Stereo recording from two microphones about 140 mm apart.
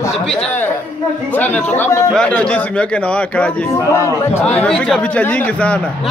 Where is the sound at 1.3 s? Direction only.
10° left (ahead or behind).